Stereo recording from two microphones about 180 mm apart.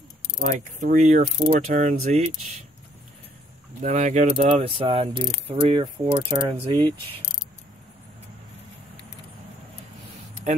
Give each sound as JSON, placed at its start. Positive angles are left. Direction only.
{"t": 0.4, "sound": "speech", "side_deg": -50}
{"t": 1.5, "sound": "mechanisms", "side_deg": -45}
{"t": 3.8, "sound": "mechanisms", "side_deg": -40}